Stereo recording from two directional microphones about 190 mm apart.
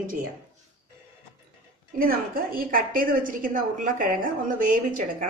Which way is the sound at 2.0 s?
50° right (ahead or behind).